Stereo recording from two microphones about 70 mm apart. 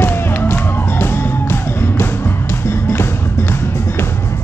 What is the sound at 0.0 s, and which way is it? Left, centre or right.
Music, left.